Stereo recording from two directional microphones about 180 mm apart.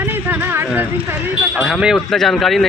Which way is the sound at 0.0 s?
10° right (ahead or behind).